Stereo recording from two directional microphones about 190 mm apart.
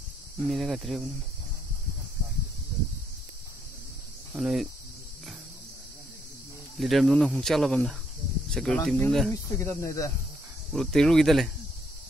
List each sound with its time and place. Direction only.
0.5 s speech: centre (ahead or behind)
4.3 s speech: centre (ahead or behind)
6.8 s speech: centre (ahead or behind)
10.7 s speech: centre (ahead or behind)